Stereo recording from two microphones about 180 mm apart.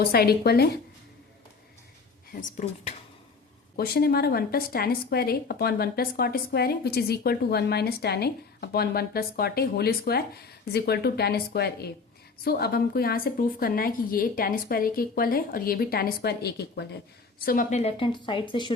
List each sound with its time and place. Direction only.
0.0 s speech: 60° left (ahead or behind)
2.3 s speech: 45° left (ahead or behind)
3.8 s speech: 60° left (ahead or behind)
17.4 s speech: 50° left (ahead or behind); by 18.7 s 25° left (ahead or behind)